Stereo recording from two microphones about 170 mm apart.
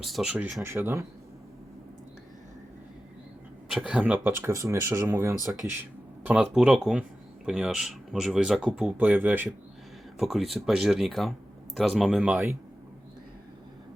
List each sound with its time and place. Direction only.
0.0 s speech: centre (ahead or behind)
3.7 s speech: centre (ahead or behind); by 5.4 s 20° right (ahead or behind)
6.2 s speech: 5° right (ahead or behind)